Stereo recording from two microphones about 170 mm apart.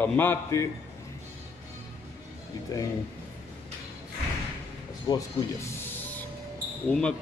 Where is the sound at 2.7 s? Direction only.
20° left (ahead or behind).